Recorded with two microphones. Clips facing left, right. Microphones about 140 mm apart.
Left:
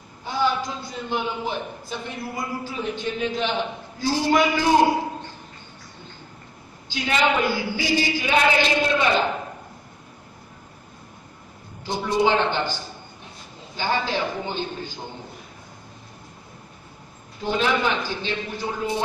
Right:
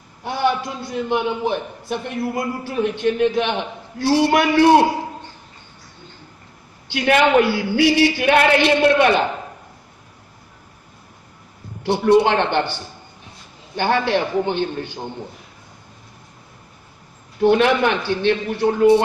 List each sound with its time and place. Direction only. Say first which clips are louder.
0.2 s a man's voice: right 3 dB; 60° right (ahead or behind)
6.9 s a man's voice: right 7 dB; 60° right (ahead or behind)
11.8 s a man's voice: right 7 dB; 65° right (ahead or behind)
13.7 s a man's voice: right 6 dB; 65° right (ahead or behind)
17.4 s a man's voice: right 8 dB; 65° right (ahead or behind)